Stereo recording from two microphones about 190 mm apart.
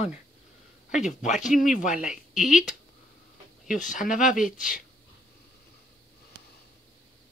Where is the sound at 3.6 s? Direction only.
45° left (ahead or behind).